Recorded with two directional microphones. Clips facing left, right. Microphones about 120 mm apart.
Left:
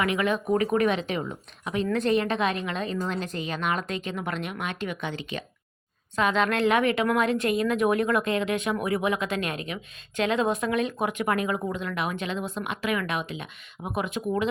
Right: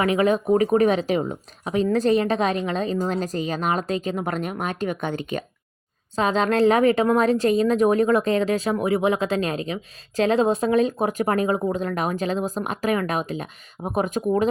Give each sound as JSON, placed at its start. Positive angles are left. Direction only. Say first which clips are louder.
{"t": 0.0, "sound": "speech", "louder": "right 6 dB", "side_deg": -35}
{"t": 6.1, "sound": "speech", "louder": "right 4 dB", "side_deg": -30}